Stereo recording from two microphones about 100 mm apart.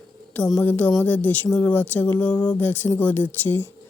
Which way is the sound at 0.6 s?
20° left (ahead or behind).